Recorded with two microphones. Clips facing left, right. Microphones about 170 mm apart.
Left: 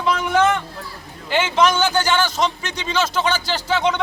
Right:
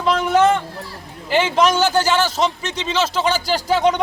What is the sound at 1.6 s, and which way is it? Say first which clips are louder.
Speech: even; 10° right (ahead or behind).